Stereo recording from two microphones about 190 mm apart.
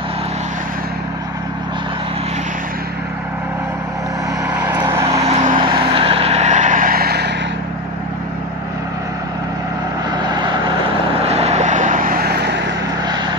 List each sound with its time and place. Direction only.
4.5 s vehicle: 5° right (ahead or behind)
5.2 s vehicle: 40° right (ahead or behind)
5.6 s vehicle: 25° right (ahead or behind); by 7.3 s 60° right (ahead or behind)
10.2 s vehicle: 25° right (ahead or behind)
11.2 s vehicle: 35° right (ahead or behind); by 12.4 s 50° right (ahead or behind)